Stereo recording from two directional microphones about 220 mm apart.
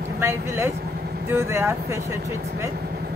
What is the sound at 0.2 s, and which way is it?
Speech, 10° right (ahead or behind).